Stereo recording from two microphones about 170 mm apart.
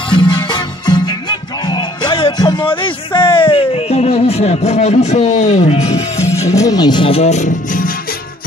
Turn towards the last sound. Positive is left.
turn(degrees=45)  # may be behind; listen again after turning